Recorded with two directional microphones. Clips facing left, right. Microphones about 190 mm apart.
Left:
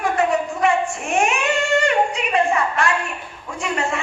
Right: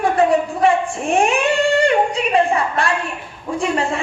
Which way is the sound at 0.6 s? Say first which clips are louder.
Right 3 dB; 30° right (ahead or behind).